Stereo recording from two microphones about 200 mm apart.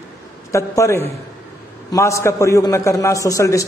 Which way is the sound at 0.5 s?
15° left (ahead or behind).